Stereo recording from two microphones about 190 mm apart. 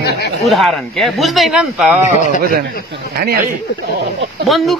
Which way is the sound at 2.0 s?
40° left (ahead or behind).